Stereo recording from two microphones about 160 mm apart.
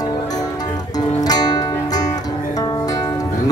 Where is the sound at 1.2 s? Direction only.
25° left (ahead or behind).